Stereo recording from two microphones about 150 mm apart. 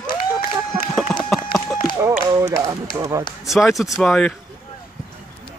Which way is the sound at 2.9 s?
20° right (ahead or behind).